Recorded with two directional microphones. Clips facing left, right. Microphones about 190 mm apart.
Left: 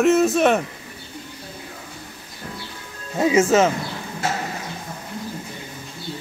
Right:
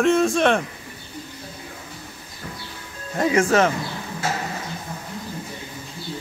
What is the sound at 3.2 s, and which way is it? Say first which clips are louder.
Speech: left 2 dB; 20° left (ahead or behind).